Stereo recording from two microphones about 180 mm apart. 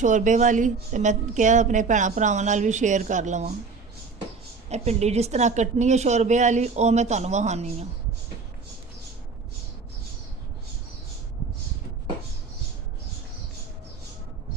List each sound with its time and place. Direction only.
0.0 s a woman's voice: 45° right (ahead or behind)
4.7 s a woman's voice: 35° right (ahead or behind)